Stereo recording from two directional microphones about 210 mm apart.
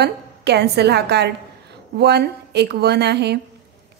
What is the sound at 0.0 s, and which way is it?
A woman's voice, 50° right (ahead or behind).